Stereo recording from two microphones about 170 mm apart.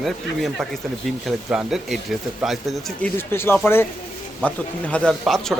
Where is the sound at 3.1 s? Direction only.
15° left (ahead or behind).